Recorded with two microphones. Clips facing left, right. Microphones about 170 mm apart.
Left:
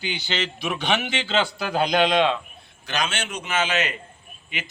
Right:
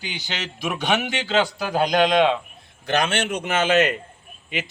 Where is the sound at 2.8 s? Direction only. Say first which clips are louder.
Right 6 dB; 55° right (ahead or behind).